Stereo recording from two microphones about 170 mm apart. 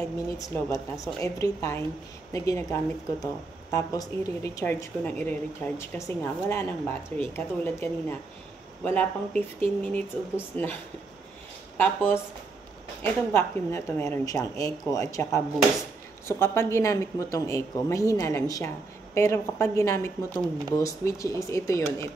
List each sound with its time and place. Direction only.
0.4 s a woman's voice: 20° left (ahead or behind)